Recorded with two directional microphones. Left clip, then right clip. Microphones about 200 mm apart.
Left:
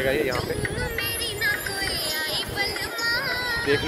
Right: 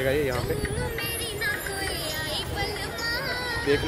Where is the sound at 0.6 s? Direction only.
25° right (ahead or behind).